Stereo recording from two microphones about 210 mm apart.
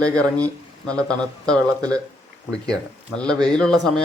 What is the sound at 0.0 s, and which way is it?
Speech, 5° left (ahead or behind).